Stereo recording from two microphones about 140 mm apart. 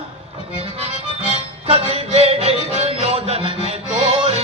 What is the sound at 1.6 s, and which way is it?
Music, 45° right (ahead or behind).